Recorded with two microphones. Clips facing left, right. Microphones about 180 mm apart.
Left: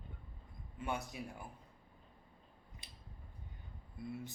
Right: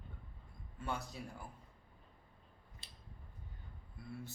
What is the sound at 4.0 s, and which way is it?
Speech, 20° left (ahead or behind).